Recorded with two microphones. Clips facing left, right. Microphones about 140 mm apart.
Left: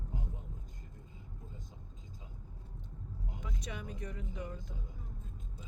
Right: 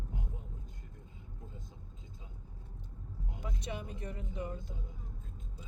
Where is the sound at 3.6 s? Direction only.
30° right (ahead or behind).